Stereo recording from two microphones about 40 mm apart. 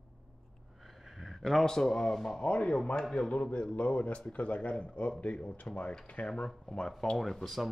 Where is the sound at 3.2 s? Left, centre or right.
Left.